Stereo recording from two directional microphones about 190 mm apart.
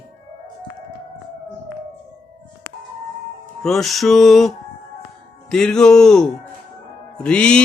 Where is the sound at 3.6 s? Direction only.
Centre (ahead or behind).